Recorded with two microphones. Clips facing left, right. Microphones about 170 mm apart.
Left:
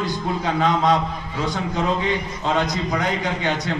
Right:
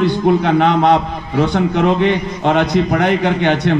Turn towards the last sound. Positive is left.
turn(degrees=-65)  # may be behind; listen again after turning